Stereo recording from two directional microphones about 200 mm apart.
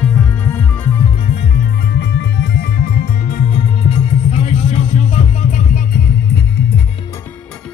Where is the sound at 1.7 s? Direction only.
55° left (ahead or behind).